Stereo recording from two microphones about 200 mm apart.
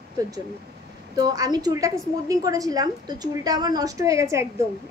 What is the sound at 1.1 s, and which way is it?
A woman's voice, 20° right (ahead or behind).